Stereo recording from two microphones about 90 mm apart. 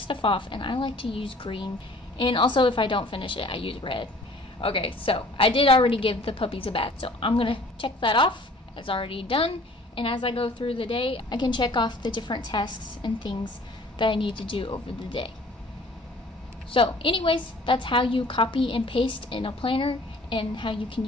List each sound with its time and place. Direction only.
0.0 s a woman's voice: 70° left (ahead or behind)
4.6 s a woman's voice: 85° left
11.2 s a woman's voice: 55° left (ahead or behind); by 15.3 s 75° left (ahead or behind)
16.7 s a woman's voice: 75° left (ahead or behind)